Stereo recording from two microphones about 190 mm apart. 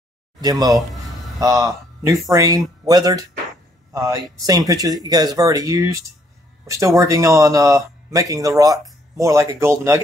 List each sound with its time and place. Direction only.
0.4 s speech: 20° right (ahead or behind)